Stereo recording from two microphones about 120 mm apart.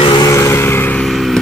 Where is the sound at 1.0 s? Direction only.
Centre (ahead or behind).